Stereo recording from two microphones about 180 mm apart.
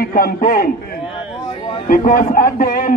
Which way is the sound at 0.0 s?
55° left (ahead or behind).